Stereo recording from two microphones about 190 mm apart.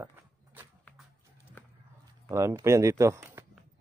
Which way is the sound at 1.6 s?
10° left (ahead or behind).